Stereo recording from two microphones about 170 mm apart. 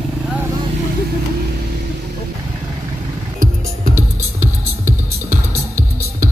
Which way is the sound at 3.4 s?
50° right (ahead or behind).